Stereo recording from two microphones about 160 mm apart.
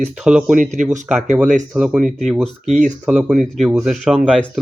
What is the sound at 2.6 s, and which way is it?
Speech, 50° right (ahead or behind).